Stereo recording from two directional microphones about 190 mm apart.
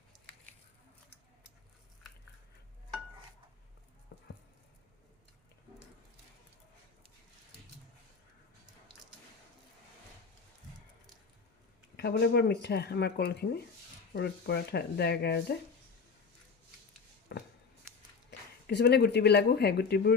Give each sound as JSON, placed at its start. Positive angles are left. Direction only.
{"t": 4.1, "sound": "patter", "side_deg": 60}
{"t": 11.9, "sound": "speech", "side_deg": 60}
{"t": 17.3, "sound": "a sound", "side_deg": 60}
{"t": 18.3, "sound": "speech", "side_deg": 60}